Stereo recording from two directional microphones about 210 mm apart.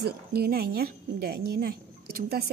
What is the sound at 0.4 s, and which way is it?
Speech, 45° right (ahead or behind).